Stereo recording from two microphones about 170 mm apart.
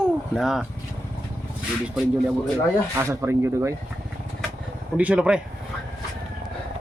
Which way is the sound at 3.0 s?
15° right (ahead or behind).